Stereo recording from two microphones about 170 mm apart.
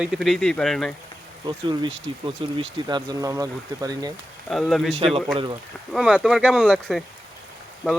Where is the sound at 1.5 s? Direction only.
30° right (ahead or behind).